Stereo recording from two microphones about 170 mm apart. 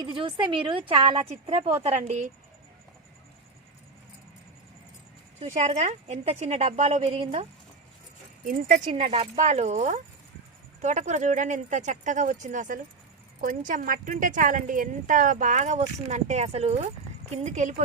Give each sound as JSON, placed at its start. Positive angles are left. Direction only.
{"t": 0.0, "sound": "a woman's voice", "side_deg": -30}
{"t": 5.5, "sound": "a woman's voice", "side_deg": -40}
{"t": 8.4, "sound": "a woman's voice", "side_deg": -50}
{"t": 8.9, "sound": "a woman's voice", "side_deg": -35}